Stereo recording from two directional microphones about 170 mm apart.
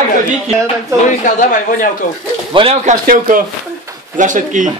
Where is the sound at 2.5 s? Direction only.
35° right (ahead or behind).